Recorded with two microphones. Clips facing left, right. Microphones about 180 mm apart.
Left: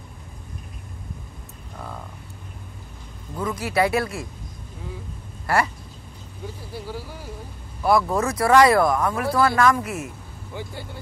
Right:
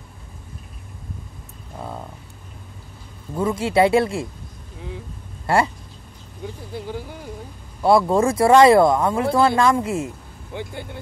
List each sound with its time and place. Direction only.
1.8 s a sound: 25° right (ahead or behind)
3.3 s speech: 25° right (ahead or behind)
5.5 s speech: 25° right (ahead or behind)
6.7 s speech: 20° right (ahead or behind)